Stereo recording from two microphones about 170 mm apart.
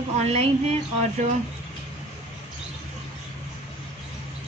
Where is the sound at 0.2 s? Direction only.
40° right (ahead or behind).